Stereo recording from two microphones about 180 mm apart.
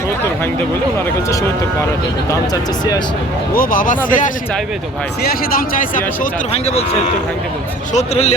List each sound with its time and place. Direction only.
3.5 s speech: 50° left (ahead or behind)
6.5 s speech: 35° left (ahead or behind)
7.9 s speech: 35° left (ahead or behind)